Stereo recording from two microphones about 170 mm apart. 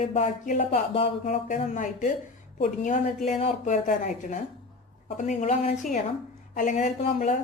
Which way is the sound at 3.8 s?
50° left (ahead or behind).